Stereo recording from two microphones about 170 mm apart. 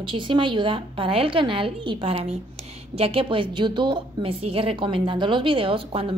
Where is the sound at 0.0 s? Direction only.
30° right (ahead or behind).